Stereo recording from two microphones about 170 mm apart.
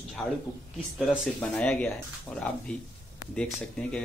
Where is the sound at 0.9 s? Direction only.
5° left (ahead or behind).